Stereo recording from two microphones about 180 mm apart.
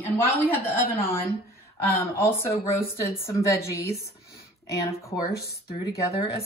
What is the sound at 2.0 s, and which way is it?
A woman's voice, 15° left (ahead or behind).